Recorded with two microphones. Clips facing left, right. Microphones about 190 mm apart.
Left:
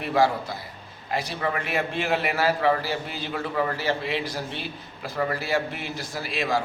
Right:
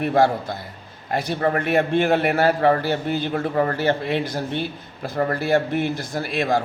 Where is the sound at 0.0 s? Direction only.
50° right (ahead or behind).